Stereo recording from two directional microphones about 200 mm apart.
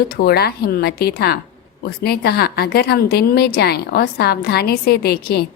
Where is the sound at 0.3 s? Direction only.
50° left (ahead or behind).